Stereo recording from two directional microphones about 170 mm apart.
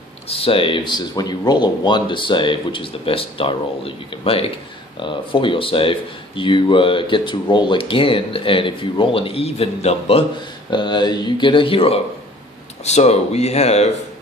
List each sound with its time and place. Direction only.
0.3 s speech: 35° left (ahead or behind)
10.7 s speech: 25° left (ahead or behind)